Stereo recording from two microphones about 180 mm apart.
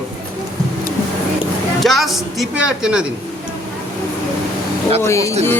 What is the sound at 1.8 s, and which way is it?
A man's voice, centre (ahead or behind).